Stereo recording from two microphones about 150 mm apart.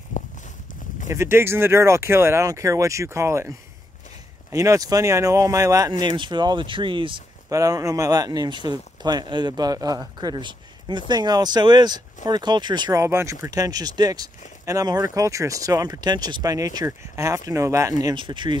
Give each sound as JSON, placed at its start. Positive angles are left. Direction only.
{"t": 0.1, "sound": "a sound", "side_deg": 55}
{"t": 1.1, "sound": "speech", "side_deg": -15}
{"t": 7.4, "sound": "speech", "side_deg": -25}
{"t": 13.0, "sound": "speech", "side_deg": -20}